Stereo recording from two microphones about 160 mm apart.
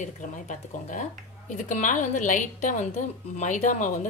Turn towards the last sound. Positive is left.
turn(degrees=50)  # may be behind; listen again after turning